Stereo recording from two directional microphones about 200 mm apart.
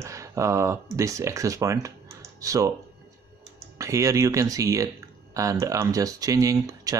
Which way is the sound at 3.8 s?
15° right (ahead or behind).